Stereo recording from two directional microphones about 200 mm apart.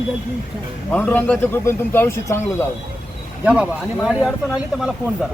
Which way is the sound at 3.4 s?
5° right (ahead or behind).